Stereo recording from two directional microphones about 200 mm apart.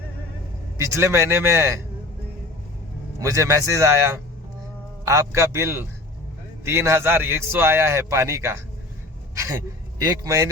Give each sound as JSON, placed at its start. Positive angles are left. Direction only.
{"t": 0.8, "sound": "a man's voice", "side_deg": -15}
{"t": 3.2, "sound": "a man's voice", "side_deg": -15}
{"t": 9.3, "sound": "a sound", "side_deg": -15}
{"t": 10.0, "sound": "a man's voice", "side_deg": -15}